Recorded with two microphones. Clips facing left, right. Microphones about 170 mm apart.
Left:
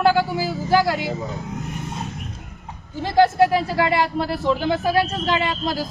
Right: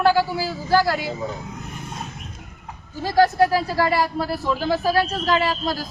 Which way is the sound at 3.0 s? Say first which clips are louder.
Left 1 dB; 25° left (ahead or behind).